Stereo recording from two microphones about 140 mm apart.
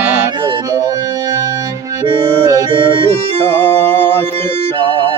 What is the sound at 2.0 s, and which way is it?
Music, 40° right (ahead or behind).